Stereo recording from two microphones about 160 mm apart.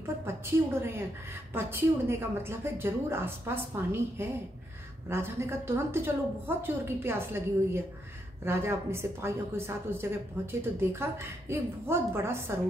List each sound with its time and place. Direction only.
1.5 s a woman's voice: 15° right (ahead or behind)